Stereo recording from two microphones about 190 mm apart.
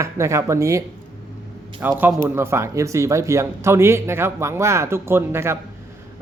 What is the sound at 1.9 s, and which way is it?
Speech, 15° right (ahead or behind).